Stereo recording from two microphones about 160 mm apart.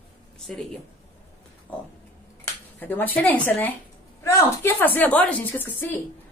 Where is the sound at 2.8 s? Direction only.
10° left (ahead or behind).